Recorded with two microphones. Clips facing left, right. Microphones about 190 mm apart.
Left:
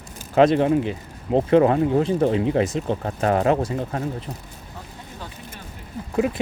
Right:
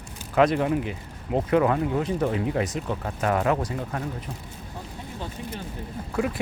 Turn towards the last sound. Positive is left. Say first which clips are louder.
# left 4 dB
turn(degrees=20)  # may be behind; listen again after turning